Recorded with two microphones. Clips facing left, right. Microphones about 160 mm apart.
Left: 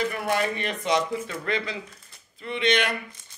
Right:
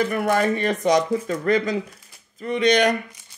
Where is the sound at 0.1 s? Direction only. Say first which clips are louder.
Right 6 dB; 50° right (ahead or behind).